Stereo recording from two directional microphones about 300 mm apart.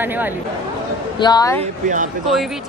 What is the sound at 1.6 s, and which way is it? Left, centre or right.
Speech, right.